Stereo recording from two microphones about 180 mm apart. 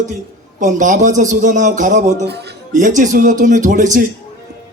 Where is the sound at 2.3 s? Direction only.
65° right (ahead or behind).